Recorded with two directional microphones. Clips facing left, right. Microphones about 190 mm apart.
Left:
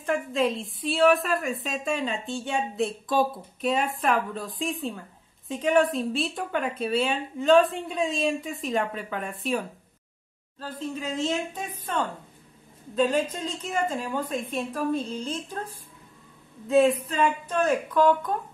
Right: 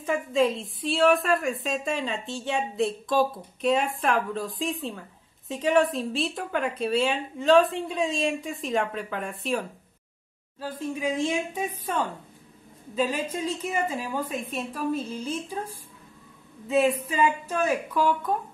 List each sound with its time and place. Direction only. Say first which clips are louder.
0.0 s a woman's voice: right 2 dB; centre (ahead or behind)
10.6 s a woman's voice: right 3 dB; 10° right (ahead or behind)